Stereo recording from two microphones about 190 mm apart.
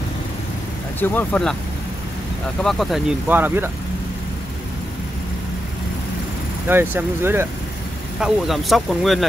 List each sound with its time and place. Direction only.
0.9 s speech: 10° left (ahead or behind)
2.6 s speech: centre (ahead or behind)
6.7 s speech: 10° right (ahead or behind)
8.2 s speech: centre (ahead or behind)